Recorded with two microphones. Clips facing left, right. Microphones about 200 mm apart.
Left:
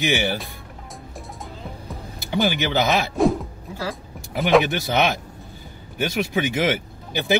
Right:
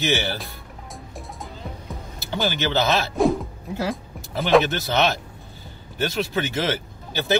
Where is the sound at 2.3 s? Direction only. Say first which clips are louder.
Left 2 dB; 15° left (ahead or behind).